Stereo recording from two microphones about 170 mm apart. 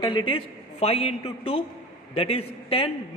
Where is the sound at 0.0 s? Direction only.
25° left (ahead or behind).